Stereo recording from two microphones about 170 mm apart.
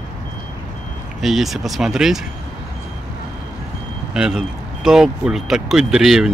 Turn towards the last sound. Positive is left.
turn(degrees=0)  # may be behind; listen again after turning